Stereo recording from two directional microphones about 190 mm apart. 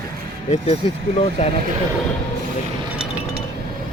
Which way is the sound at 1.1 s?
35° left (ahead or behind).